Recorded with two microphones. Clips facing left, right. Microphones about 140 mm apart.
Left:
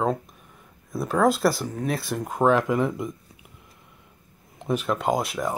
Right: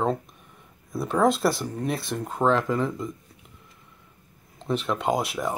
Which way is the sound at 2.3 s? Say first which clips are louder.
Left 2 dB; 10° left (ahead or behind).